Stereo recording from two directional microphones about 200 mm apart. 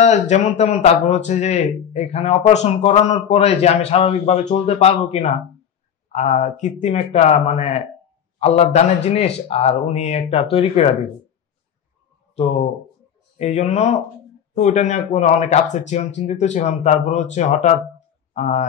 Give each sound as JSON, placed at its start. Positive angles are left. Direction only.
{"t": 0.0, "sound": "speech", "side_deg": 35}
{"t": 12.4, "sound": "speech", "side_deg": 30}